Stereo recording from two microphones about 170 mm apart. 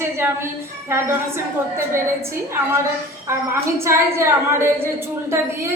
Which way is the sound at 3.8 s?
15° right (ahead or behind).